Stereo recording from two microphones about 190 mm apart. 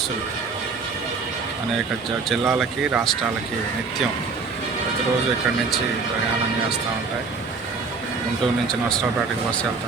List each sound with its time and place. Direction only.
2.3 s speech: 5° right (ahead or behind)